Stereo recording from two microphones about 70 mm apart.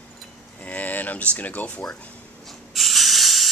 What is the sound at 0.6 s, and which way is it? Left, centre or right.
Speech, left.